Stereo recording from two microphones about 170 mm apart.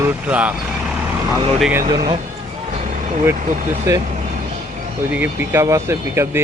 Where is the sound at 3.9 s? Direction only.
20° right (ahead or behind).